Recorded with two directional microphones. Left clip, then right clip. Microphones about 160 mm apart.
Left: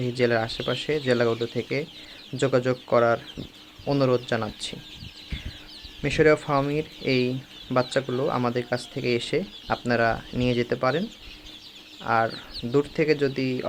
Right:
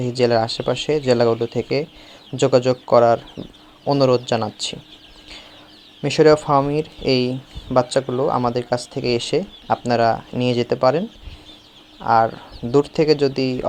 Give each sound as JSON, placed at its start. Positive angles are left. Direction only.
{"t": 0.0, "sound": "speech", "side_deg": -15}
{"t": 6.0, "sound": "speech", "side_deg": -15}
{"t": 8.0, "sound": "speech", "side_deg": 0}
{"t": 8.3, "sound": "speech", "side_deg": -10}
{"t": 12.0, "sound": "speech", "side_deg": -10}